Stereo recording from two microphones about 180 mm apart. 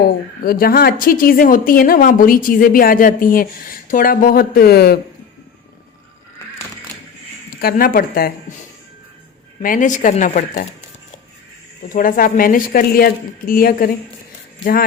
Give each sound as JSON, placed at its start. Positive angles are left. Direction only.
{"t": 0.4, "sound": "speech", "side_deg": 55}
{"t": 7.6, "sound": "speech", "side_deg": 55}
{"t": 9.6, "sound": "speech", "side_deg": 45}
{"t": 11.9, "sound": "speech", "side_deg": 50}